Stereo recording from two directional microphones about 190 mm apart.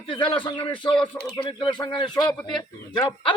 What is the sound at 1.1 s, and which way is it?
Speech, 15° left (ahead or behind).